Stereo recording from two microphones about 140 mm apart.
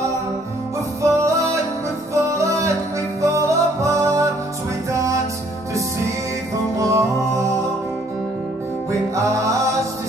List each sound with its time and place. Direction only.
1.0 s music: 20° right (ahead or behind)
6.8 s music: 20° right (ahead or behind)
9.1 s music: 20° right (ahead or behind)